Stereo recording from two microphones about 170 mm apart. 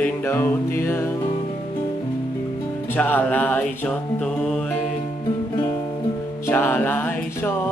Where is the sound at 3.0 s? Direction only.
10° left (ahead or behind).